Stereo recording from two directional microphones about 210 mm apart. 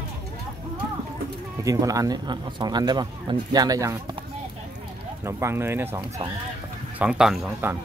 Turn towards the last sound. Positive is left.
turn(degrees=-5)  # may be behind; listen again after turning